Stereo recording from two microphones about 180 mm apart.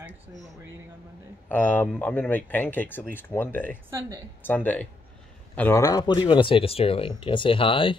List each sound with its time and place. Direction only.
1.5 s speech: 10° left (ahead or behind); by 8.0 s 30° left (ahead or behind)